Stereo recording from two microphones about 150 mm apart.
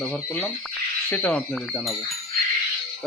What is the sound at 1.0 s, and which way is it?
Speech, 10° left (ahead or behind).